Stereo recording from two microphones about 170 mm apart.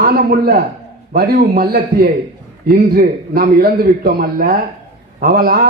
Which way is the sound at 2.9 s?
60° right (ahead or behind).